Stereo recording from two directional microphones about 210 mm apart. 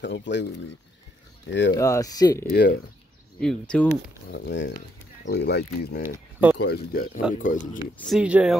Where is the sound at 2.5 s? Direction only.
50° left (ahead or behind).